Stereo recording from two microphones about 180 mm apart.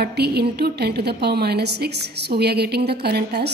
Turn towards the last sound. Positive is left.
turn(degrees=-65)  # may be behind; listen again after turning